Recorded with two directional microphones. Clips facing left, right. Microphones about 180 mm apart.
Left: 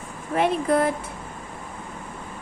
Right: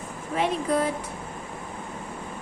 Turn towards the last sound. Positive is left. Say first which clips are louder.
# left 4 dB
turn(degrees=55)  # may be behind; listen again after turning